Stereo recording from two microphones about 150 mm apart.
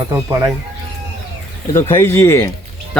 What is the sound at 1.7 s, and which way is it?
Speech, 20° left (ahead or behind).